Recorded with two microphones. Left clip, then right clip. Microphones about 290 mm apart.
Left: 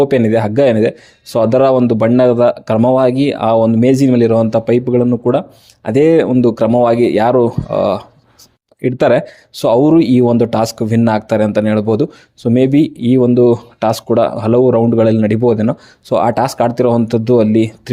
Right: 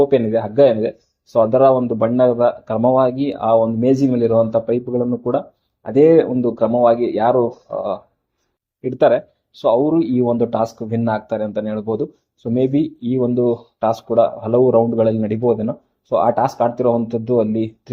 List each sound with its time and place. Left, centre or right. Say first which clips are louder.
0.0 s speech: left 3 dB; left